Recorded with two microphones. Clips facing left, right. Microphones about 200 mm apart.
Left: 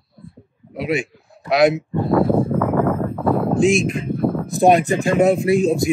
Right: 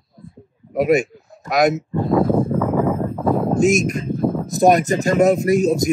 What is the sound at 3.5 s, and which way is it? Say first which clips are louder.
Speech: even; 40° right (ahead or behind).